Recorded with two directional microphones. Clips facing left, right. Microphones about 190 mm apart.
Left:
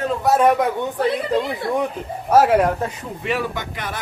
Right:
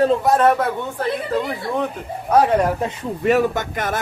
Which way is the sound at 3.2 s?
45° right (ahead or behind).